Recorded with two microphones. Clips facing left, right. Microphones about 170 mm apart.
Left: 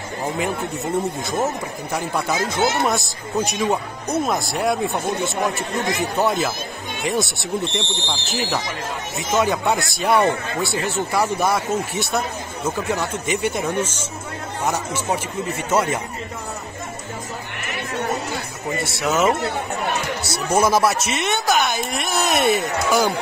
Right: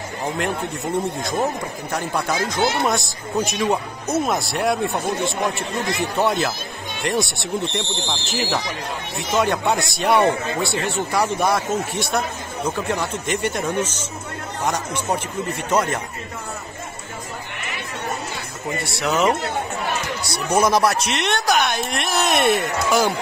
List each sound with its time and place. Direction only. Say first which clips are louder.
1.2 s speech: even; centre (ahead or behind)
13.3 s speech: left 1 dB; 55° right (ahead or behind)
13.6 s speech: even; 10° left (ahead or behind)
18.9 s speech: even; centre (ahead or behind)
20.4 s speech: even; 5° left (ahead or behind)